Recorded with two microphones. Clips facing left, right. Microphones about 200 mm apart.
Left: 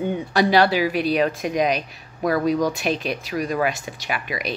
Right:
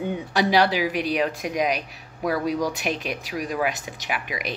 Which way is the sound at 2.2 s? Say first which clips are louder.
Left 4 dB; 10° right (ahead or behind).